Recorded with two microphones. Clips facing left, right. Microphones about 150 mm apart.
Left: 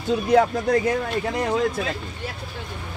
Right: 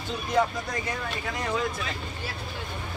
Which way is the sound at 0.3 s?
65° left (ahead or behind).